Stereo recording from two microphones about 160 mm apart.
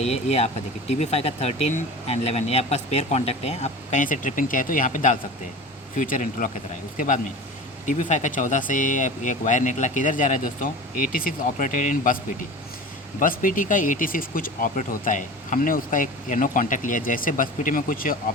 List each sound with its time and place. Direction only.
0.0 s speech: 40° left (ahead or behind); by 18.2 s 60° left (ahead or behind)